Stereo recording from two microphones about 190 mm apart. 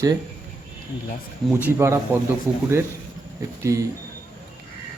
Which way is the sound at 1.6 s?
15° right (ahead or behind).